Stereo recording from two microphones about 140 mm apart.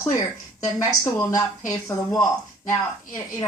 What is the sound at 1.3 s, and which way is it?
Speech, 25° left (ahead or behind).